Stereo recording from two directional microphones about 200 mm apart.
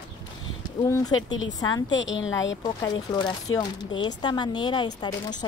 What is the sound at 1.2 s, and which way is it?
Speech, 70° left (ahead or behind).